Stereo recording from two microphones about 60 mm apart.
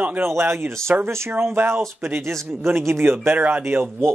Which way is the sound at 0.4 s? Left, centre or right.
Right.